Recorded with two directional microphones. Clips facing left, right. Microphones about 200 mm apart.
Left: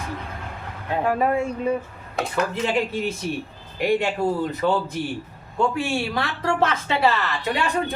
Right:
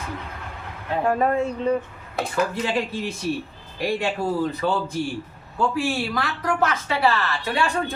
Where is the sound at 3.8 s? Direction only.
20° left (ahead or behind).